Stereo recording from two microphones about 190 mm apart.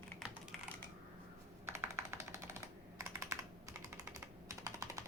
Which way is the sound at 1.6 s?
15° right (ahead or behind).